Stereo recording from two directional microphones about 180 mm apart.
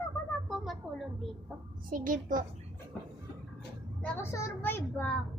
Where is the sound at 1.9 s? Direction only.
50° right (ahead or behind).